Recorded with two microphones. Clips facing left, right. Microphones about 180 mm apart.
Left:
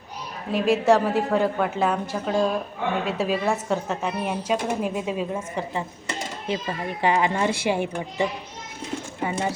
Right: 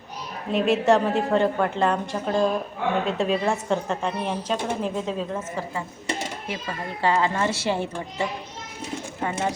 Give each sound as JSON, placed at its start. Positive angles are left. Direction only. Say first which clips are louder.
{"t": 0.5, "sound": "a woman's voice", "louder": "even", "side_deg": 0}
{"t": 7.0, "sound": "speech", "louder": "left 1 dB", "side_deg": 15}
{"t": 9.2, "sound": "a woman's voice", "louder": "even", "side_deg": 5}